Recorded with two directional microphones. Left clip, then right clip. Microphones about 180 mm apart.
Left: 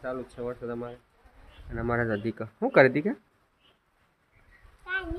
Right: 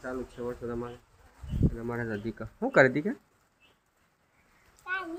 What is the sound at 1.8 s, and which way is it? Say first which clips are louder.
Speech: left 6 dB; 40° left (ahead or behind).